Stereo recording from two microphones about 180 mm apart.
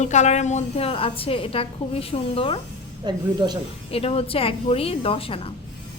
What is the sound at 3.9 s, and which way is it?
A woman's voice, 30° left (ahead or behind).